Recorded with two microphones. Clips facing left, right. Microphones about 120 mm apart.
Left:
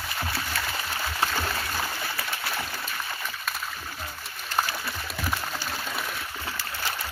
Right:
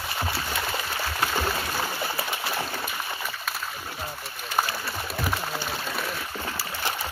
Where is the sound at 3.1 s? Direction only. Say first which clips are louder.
Right 1 dB; 10° right (ahead or behind).